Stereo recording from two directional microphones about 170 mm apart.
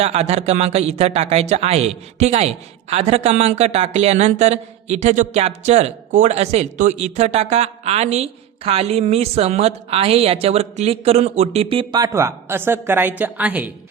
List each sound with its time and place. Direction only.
0.0 s speech: 40° right (ahead or behind); by 13.7 s 10° right (ahead or behind)